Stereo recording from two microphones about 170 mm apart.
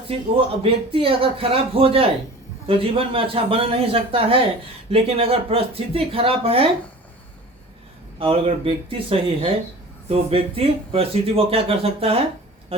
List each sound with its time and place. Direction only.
0.3 s speech: 35° right (ahead or behind)
8.2 s speech: 35° right (ahead or behind)